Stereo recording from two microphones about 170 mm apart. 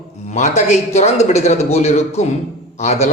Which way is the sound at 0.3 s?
45° left (ahead or behind).